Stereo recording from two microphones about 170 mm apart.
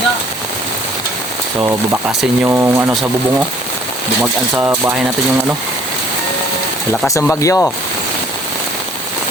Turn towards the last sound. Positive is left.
turn(degrees=15)  # may be behind; listen again after turning